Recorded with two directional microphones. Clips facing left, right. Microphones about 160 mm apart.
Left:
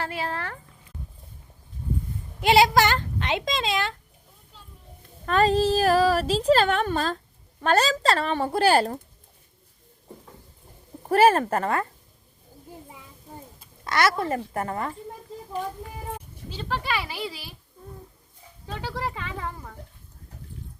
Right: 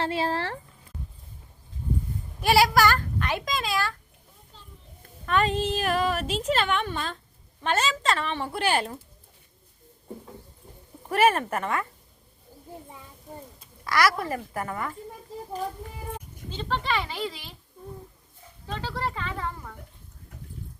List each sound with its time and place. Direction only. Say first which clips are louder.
0.0 s a sound: right 4 dB; 30° right (ahead or behind)
2.4 s a child's voice: left 2 dB; 20° left (ahead or behind)
5.2 s a woman's voice: left 4 dB; 35° left (ahead or behind)
11.1 s a woman's voice: left 4 dB; 30° left (ahead or behind)
13.8 s a woman's voice: left 1 dB; 25° left (ahead or behind)
16.5 s speech: right 1 dB; 5° left (ahead or behind)
18.7 s speech: even; 10° left (ahead or behind)